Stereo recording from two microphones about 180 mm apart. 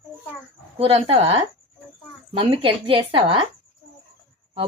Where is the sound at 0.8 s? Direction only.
30° right (ahead or behind).